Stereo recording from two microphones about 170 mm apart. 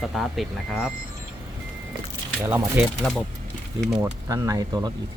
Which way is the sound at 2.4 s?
15° right (ahead or behind).